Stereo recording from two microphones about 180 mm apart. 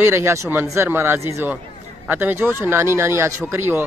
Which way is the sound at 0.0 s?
15° right (ahead or behind).